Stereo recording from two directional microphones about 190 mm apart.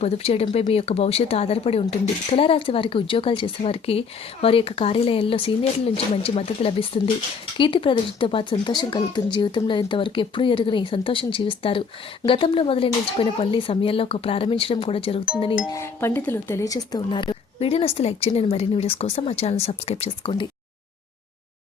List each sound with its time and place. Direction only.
0.0 s speech: 30° left (ahead or behind)
15.7 s speech: 15° left (ahead or behind); by 20.5 s 30° left (ahead or behind)